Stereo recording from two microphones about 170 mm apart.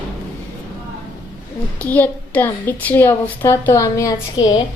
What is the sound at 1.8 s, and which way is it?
A woman's voice, 10° left (ahead or behind).